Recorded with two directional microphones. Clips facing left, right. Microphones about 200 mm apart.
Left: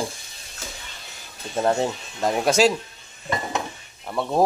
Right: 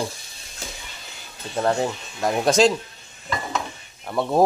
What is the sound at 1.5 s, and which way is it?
Speech, 15° left (ahead or behind).